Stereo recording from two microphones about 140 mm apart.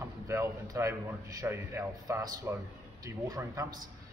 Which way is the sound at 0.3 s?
20° right (ahead or behind).